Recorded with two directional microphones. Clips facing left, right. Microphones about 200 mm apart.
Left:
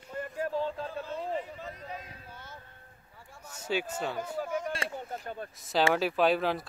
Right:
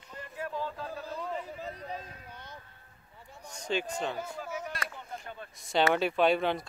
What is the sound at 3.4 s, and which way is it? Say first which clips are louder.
Speech: even; 5° left (ahead or behind).